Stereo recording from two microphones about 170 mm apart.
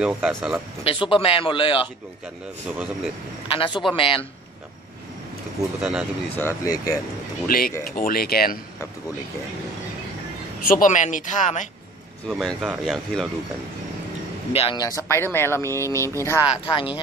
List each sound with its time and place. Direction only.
0.0 s speech: centre (ahead or behind)
0.8 s speech: 30° left (ahead or behind)
3.5 s speech: 30° left (ahead or behind)
5.8 s speech: 5° right (ahead or behind)
6.3 s speech: 15° left (ahead or behind)
7.4 s speech: 60° left (ahead or behind)
10.6 s speech: 55° left (ahead or behind)
12.3 s speech: centre (ahead or behind)
14.5 s speech: 35° left (ahead or behind)
14.8 s speech: 20° left (ahead or behind)
16.6 s speech: 30° left (ahead or behind)